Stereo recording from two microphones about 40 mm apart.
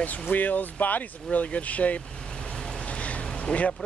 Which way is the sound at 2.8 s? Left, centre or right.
Left.